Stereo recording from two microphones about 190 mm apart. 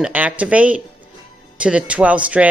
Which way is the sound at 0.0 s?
5° right (ahead or behind).